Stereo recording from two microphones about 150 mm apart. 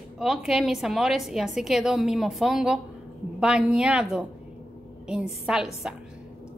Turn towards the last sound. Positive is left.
turn(degrees=-5)  # may be behind; listen again after turning